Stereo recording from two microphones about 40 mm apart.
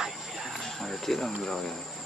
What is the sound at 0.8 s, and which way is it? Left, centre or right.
Speech, centre.